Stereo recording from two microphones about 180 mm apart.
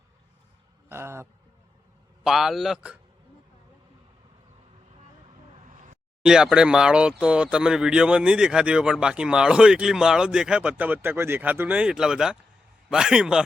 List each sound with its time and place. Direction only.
0.9 s speech: 15° right (ahead or behind)
2.2 s speech: centre (ahead or behind)
5.5 s vehicle: 45° right (ahead or behind)
6.2 s speech: 5° right (ahead or behind)